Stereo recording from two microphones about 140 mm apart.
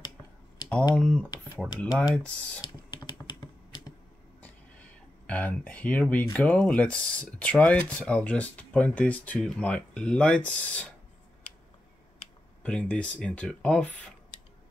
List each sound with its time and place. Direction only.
0.6 s typing: 30° left (ahead or behind)
0.9 s speech: 10° left (ahead or behind)
2.6 s computer keyboard: 30° left (ahead or behind)
4.4 s a sound: 10° left (ahead or behind)
6.3 s speech: 10° left (ahead or behind)
12.6 s speech: 10° left (ahead or behind)